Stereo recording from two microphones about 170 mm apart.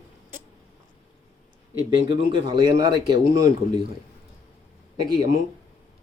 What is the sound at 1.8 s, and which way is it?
Speech, 25° right (ahead or behind).